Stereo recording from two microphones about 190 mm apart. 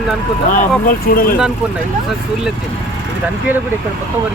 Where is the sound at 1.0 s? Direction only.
50° left (ahead or behind).